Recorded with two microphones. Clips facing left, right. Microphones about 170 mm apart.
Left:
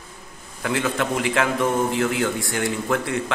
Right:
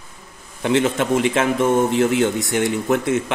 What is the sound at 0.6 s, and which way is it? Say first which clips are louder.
A man's voice: right 5 dB; 25° right (ahead or behind).